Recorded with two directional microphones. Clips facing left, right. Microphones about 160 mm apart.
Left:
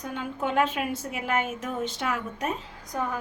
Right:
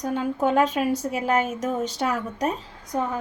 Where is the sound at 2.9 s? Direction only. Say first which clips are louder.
Right 4 dB; 25° right (ahead or behind).